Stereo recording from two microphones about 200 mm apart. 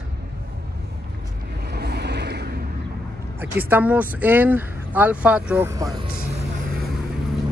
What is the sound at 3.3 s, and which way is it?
Speech, 10° right (ahead or behind).